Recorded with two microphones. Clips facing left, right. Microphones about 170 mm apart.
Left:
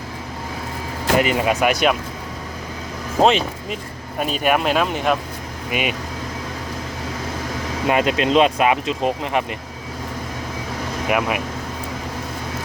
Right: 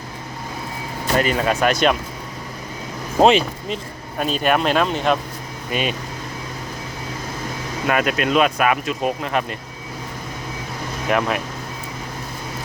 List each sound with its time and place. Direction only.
1.2 s speech: 15° left (ahead or behind)
3.2 s speech: centre (ahead or behind)
4.2 s speech: 10° left (ahead or behind)
7.9 s speech: 20° left (ahead or behind)
11.1 s speech: 10° left (ahead or behind)